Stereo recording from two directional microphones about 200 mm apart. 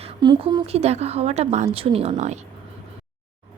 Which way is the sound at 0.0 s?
25° right (ahead or behind).